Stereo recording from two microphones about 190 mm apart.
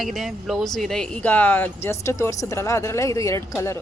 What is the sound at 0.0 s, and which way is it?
Speech, centre (ahead or behind).